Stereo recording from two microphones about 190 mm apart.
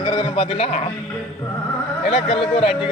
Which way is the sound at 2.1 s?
30° left (ahead or behind).